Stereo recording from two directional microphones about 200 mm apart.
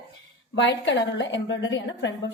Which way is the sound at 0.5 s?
60° left (ahead or behind).